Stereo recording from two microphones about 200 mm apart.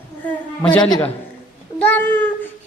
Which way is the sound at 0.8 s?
20° left (ahead or behind).